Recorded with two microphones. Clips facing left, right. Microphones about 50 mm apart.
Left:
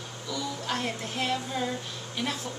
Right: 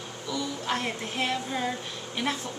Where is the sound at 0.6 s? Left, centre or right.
Centre.